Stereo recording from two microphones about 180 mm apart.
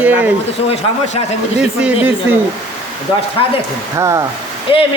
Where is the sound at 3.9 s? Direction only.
20° right (ahead or behind).